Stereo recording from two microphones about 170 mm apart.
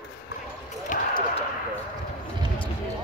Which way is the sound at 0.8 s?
50° left (ahead or behind).